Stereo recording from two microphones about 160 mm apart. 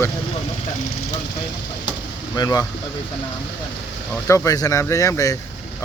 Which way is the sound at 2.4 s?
25° left (ahead or behind).